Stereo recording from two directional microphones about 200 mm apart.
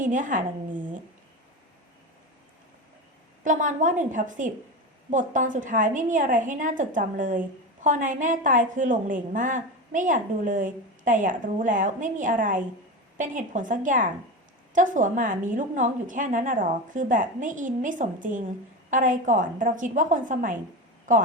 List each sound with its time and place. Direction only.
0.0 s a woman's voice: 40° right (ahead or behind)
3.4 s a woman's voice: 40° right (ahead or behind)